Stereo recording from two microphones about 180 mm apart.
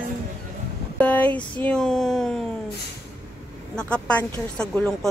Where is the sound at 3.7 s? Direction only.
5° left (ahead or behind).